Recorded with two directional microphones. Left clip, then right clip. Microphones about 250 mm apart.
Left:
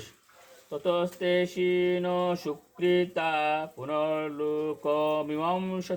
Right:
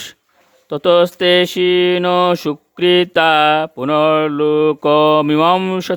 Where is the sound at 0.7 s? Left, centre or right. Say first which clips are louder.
Right 16 dB; right.